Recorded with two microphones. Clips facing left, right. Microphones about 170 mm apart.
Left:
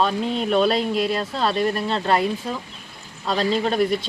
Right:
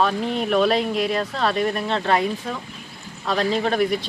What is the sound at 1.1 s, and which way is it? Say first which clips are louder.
Speech: even; 25° left (ahead or behind).